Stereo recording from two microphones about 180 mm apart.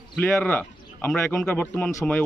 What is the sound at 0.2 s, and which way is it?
Speech, 10° left (ahead or behind).